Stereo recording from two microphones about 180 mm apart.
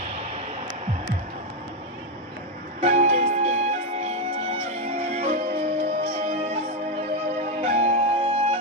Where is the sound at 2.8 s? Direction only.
40° right (ahead or behind).